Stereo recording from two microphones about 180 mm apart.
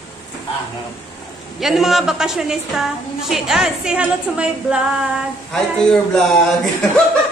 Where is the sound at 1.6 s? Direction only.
Centre (ahead or behind).